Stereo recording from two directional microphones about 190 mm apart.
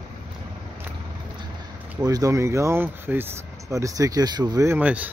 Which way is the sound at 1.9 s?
15° right (ahead or behind).